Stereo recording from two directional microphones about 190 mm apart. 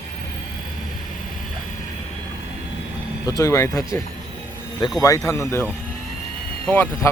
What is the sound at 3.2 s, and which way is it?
Speech, 15° left (ahead or behind).